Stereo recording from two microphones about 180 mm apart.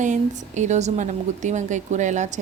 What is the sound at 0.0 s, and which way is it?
A woman's voice, 40° right (ahead or behind).